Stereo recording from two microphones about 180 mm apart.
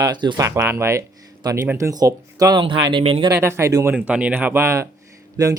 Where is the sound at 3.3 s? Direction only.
15° right (ahead or behind).